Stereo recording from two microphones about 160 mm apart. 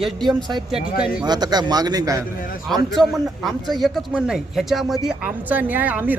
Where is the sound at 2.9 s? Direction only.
Centre (ahead or behind).